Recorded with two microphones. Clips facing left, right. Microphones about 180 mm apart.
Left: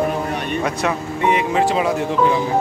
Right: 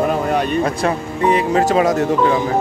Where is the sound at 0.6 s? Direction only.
35° right (ahead or behind).